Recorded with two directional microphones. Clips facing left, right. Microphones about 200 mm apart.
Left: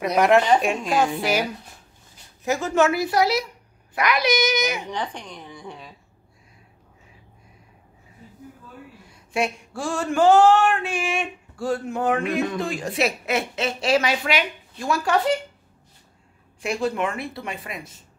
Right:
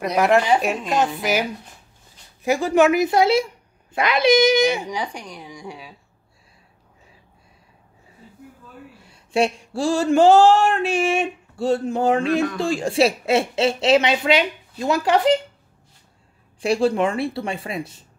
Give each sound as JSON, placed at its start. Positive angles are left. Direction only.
{"t": 0.0, "sound": "a woman's voice", "side_deg": 0}
{"t": 2.4, "sound": "speech", "side_deg": -15}
{"t": 3.9, "sound": "a sound", "side_deg": -25}
{"t": 4.8, "sound": "speech", "side_deg": -10}
{"t": 9.3, "sound": "a sound", "side_deg": -30}
{"t": 16.6, "sound": "speech", "side_deg": -30}